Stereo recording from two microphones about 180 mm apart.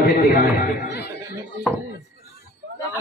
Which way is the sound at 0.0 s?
65° left (ahead or behind).